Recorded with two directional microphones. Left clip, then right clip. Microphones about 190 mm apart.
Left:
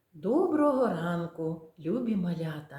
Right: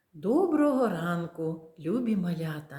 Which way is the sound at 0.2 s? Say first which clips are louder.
Right 1 dB; 35° right (ahead or behind).